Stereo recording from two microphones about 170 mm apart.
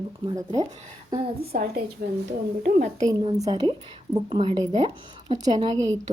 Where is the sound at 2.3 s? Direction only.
45° right (ahead or behind).